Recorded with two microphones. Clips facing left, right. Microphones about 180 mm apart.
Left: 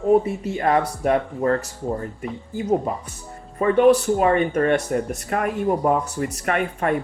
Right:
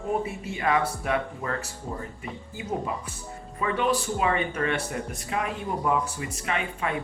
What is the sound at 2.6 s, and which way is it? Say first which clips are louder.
Speech: left 9 dB; 40° left (ahead or behind).